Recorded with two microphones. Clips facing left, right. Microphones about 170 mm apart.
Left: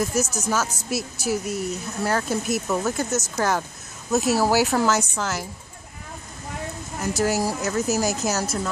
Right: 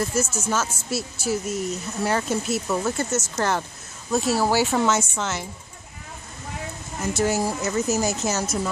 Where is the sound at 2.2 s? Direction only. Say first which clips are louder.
Even; 15° left (ahead or behind).